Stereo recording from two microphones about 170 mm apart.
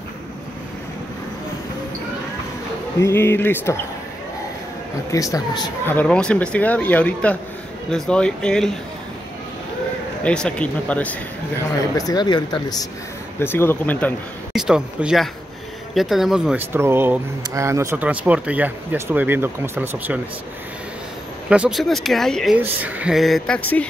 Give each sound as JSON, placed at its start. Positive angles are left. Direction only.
{"t": 3.0, "sound": "speech", "side_deg": 15}
{"t": 5.1, "sound": "speech", "side_deg": 20}
{"t": 5.9, "sound": "speech", "side_deg": 10}
{"t": 10.2, "sound": "speech", "side_deg": 5}
{"t": 11.9, "sound": "speech", "side_deg": 25}
{"t": 13.4, "sound": "speech", "side_deg": 15}
{"t": 14.5, "sound": "speech", "side_deg": -5}
{"t": 21.5, "sound": "speech", "side_deg": -5}
{"t": 22.6, "sound": "speech", "side_deg": -10}